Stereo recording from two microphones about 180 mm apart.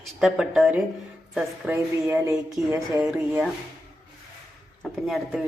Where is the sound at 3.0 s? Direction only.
5° right (ahead or behind).